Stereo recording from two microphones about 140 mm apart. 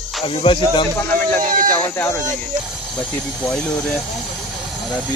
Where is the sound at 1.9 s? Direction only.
20° left (ahead or behind).